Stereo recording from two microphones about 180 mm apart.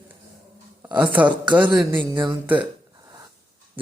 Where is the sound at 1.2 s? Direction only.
25° right (ahead or behind).